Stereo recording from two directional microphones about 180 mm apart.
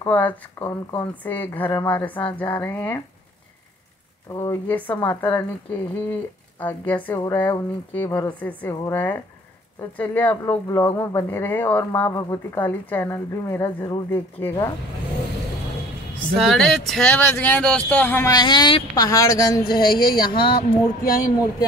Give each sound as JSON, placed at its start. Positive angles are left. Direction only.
{"t": 0.0, "sound": "a woman's voice", "side_deg": 10}
{"t": 4.3, "sound": "a woman's voice", "side_deg": 15}
{"t": 16.3, "sound": "speech", "side_deg": 0}
{"t": 18.3, "sound": "speech", "side_deg": 25}
{"t": 21.0, "sound": "speech", "side_deg": 50}